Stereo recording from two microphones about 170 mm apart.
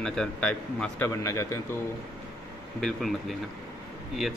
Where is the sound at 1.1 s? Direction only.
20° left (ahead or behind).